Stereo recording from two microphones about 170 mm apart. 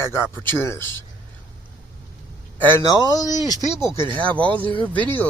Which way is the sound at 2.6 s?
15° left (ahead or behind).